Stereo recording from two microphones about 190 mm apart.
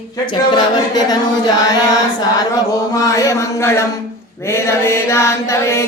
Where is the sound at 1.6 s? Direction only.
20° left (ahead or behind).